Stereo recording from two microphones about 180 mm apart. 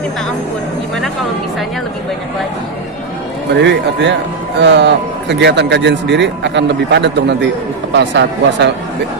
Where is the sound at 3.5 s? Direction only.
75° right (ahead or behind).